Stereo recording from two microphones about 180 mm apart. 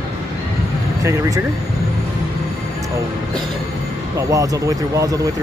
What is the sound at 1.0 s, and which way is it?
Speech, 15° right (ahead or behind).